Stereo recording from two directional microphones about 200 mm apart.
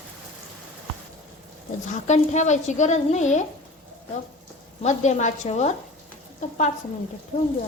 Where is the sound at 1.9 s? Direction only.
35° left (ahead or behind).